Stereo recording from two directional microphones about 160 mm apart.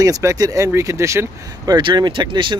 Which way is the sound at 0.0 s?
20° right (ahead or behind).